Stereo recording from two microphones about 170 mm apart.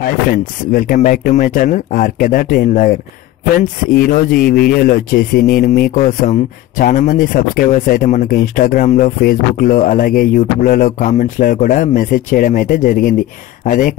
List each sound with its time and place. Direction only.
0.3 s a man's voice: 55° left (ahead or behind)
5.9 s speech: 40° left (ahead or behind)